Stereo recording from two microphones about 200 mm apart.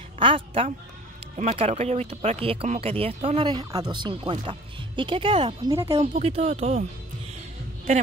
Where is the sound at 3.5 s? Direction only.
20° right (ahead or behind).